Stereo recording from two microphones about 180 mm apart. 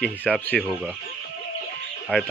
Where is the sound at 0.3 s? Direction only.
Centre (ahead or behind).